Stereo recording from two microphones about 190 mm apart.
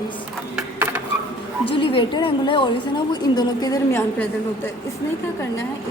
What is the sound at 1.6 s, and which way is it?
A woman's voice, 30° left (ahead or behind).